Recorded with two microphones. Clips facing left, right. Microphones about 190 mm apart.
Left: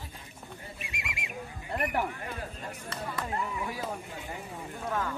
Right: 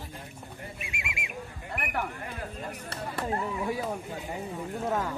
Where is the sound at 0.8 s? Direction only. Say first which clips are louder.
Right 2 dB; 35° left (ahead or behind).